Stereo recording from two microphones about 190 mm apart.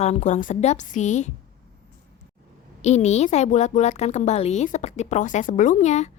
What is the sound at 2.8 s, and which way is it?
A woman's voice, 35° left (ahead or behind).